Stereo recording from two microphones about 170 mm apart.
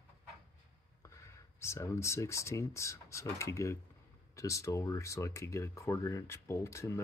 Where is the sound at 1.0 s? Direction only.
15° left (ahead or behind).